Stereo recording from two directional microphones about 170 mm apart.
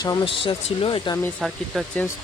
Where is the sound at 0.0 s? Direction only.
25° left (ahead or behind).